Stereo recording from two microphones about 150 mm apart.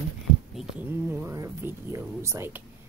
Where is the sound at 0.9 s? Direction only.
15° right (ahead or behind).